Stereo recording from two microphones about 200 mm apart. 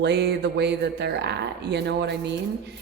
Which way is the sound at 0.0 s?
55° right (ahead or behind).